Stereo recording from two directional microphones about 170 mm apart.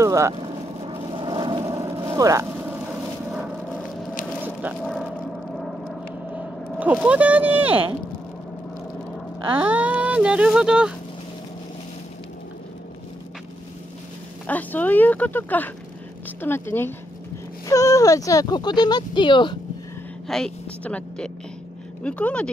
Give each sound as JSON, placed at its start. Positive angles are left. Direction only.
{"t": 0.0, "sound": "vehicle", "side_deg": -20}
{"t": 0.8, "sound": "vehicle", "side_deg": -30}
{"t": 6.3, "sound": "speech", "side_deg": -10}
{"t": 9.6, "sound": "speech", "side_deg": -10}
{"t": 14.4, "sound": "speech", "side_deg": 10}
{"t": 20.2, "sound": "speech", "side_deg": 5}